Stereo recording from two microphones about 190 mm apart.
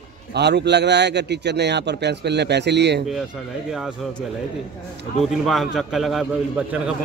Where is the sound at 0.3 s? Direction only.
60° right (ahead or behind).